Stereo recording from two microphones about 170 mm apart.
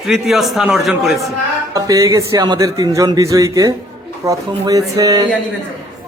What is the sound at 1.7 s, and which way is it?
A man's voice, 20° right (ahead or behind).